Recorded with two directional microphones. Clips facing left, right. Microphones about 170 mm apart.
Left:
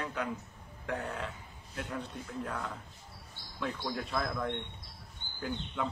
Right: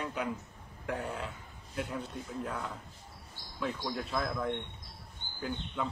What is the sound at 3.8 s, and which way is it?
A man's voice, centre (ahead or behind).